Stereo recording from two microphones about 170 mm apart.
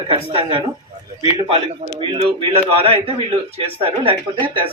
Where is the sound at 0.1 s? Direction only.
35° right (ahead or behind).